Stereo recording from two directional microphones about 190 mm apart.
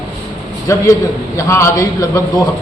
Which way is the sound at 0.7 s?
15° left (ahead or behind).